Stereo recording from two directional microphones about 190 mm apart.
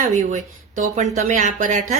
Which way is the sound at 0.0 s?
40° right (ahead or behind).